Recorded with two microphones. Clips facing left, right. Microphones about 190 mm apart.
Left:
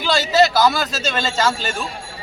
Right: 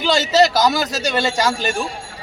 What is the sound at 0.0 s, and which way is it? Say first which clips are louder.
Speech: right 1 dB; 20° right (ahead or behind).